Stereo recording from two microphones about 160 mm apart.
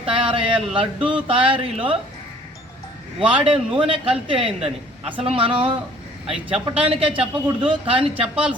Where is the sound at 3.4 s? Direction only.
35° right (ahead or behind).